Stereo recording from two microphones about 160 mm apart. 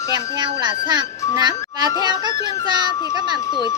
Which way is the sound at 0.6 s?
25° right (ahead or behind).